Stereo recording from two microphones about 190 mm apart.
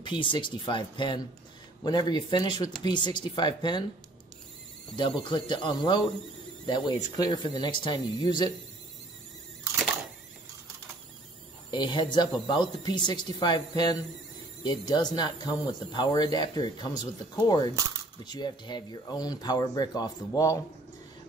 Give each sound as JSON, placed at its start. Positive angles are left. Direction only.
{"t": 0.0, "sound": "speech", "side_deg": 25}
{"t": 5.2, "sound": "speech", "side_deg": 25}
{"t": 11.7, "sound": "speech", "side_deg": 25}